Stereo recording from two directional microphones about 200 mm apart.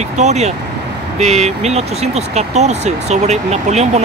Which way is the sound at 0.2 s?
35° right (ahead or behind).